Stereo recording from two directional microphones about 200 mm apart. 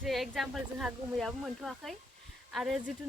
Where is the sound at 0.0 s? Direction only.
Centre (ahead or behind).